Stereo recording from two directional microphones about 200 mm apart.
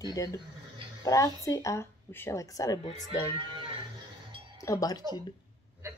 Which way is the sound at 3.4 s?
25° right (ahead or behind).